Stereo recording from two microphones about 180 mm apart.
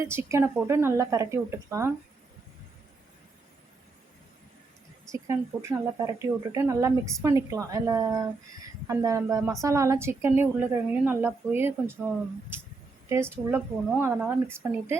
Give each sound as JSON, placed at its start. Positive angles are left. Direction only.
{"t": 0.0, "sound": "a woman's voice", "side_deg": -15}
{"t": 5.1, "sound": "a woman's voice", "side_deg": -15}
{"t": 13.3, "sound": "a woman's voice", "side_deg": -15}